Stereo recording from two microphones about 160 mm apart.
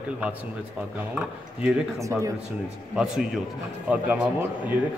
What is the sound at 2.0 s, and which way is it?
Speech, 20° right (ahead or behind).